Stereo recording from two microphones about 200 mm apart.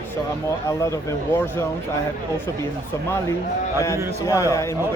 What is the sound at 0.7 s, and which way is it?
Speech, 15° left (ahead or behind).